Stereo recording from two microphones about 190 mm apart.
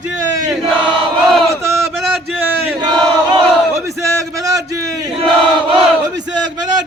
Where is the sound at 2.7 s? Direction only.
20° right (ahead or behind).